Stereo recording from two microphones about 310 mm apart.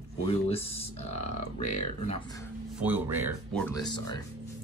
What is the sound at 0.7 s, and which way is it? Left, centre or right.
Speech, centre.